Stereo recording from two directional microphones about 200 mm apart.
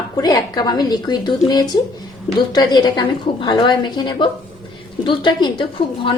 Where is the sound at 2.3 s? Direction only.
20° left (ahead or behind).